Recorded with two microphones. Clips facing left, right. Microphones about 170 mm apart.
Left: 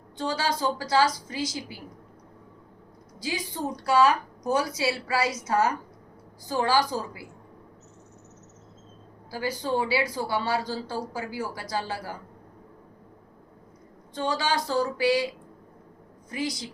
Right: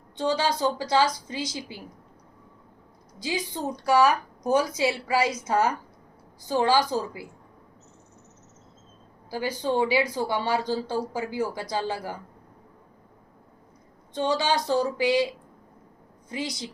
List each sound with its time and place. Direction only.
0.2 s speech: 20° right (ahead or behind)
3.2 s a woman's voice: 25° right (ahead or behind)
4.4 s speech: 20° right (ahead or behind)
9.3 s speech: 20° right (ahead or behind)
14.1 s speech: 25° right (ahead or behind)